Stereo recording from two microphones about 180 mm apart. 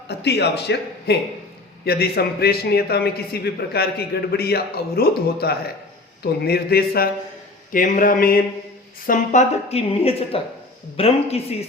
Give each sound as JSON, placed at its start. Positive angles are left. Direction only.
{"t": 0.1, "sound": "a man's voice", "side_deg": 65}